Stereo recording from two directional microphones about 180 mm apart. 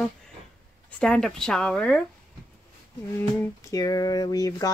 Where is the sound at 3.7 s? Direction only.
20° left (ahead or behind).